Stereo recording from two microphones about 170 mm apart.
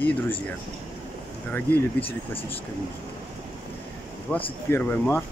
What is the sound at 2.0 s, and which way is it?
Speech, 35° left (ahead or behind).